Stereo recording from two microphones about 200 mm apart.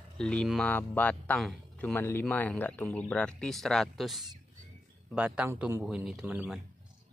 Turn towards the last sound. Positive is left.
turn(degrees=-5)  # may be behind; listen again after turning